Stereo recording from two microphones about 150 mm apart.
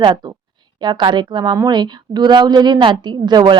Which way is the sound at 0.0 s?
30° right (ahead or behind).